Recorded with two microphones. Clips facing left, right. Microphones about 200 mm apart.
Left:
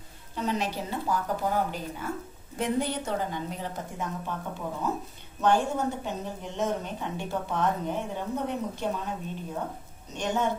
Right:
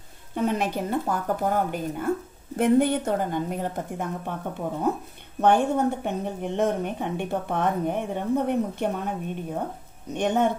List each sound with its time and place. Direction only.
0.3 s a woman's voice: 55° right (ahead or behind)